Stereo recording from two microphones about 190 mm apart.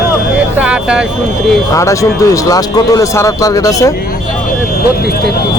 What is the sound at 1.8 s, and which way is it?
Speech, 15° left (ahead or behind).